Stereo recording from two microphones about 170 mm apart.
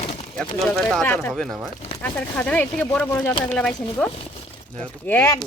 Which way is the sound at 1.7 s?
40° left (ahead or behind).